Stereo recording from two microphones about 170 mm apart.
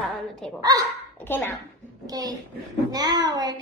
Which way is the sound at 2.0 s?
20° right (ahead or behind).